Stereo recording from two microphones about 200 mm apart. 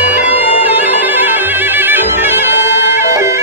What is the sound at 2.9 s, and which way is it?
Music, 15° right (ahead or behind).